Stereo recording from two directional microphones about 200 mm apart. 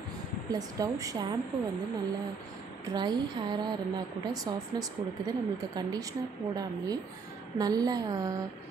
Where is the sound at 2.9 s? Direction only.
20° right (ahead or behind).